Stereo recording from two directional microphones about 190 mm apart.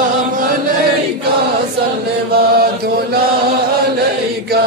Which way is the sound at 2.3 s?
55° right (ahead or behind).